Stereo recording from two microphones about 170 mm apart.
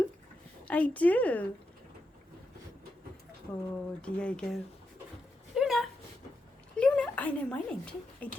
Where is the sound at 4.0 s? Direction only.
5° left (ahead or behind).